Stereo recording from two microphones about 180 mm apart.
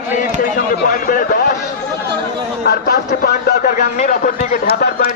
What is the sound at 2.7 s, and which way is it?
A man's voice, 60° left (ahead or behind).